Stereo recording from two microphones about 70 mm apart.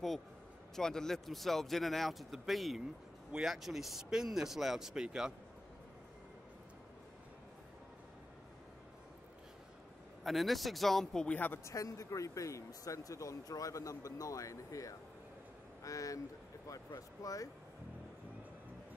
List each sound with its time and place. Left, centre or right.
0.7 s speech: centre
10.2 s speech: centre
11.2 s speech: left
11.6 s speech: left
17.2 s speech: left